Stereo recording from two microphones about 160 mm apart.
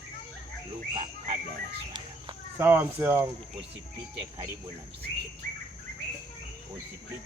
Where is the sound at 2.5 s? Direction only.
15° right (ahead or behind).